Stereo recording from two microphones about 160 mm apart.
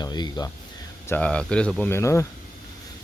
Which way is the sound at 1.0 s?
10° left (ahead or behind).